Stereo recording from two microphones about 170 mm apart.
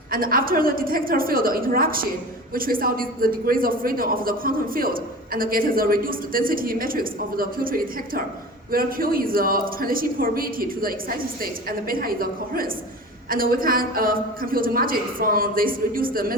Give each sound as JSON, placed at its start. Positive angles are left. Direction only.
{"t": 0.1, "sound": "a woman's voice", "side_deg": -55}